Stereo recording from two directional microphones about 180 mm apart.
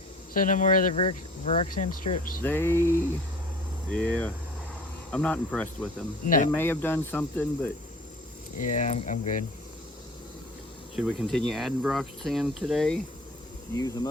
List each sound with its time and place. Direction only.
0.3 s speech: 45° left (ahead or behind)
2.4 s speech: 10° left (ahead or behind)
6.2 s speech: 50° left (ahead or behind)
6.5 s speech: 10° left (ahead or behind)
8.5 s speech: 45° left (ahead or behind)
10.9 s speech: centre (ahead or behind)
13.7 s speech: 20° left (ahead or behind)